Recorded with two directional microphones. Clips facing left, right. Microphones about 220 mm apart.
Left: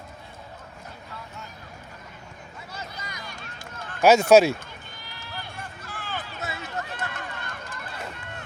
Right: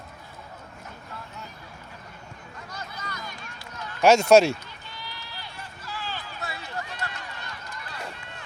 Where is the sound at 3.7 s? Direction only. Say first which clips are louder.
Right 1 dB; 50° left (ahead or behind).